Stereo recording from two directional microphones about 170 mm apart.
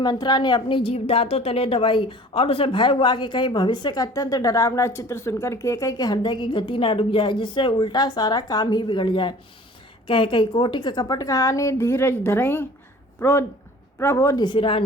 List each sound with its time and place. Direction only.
0.0 s a woman's voice: 25° left (ahead or behind)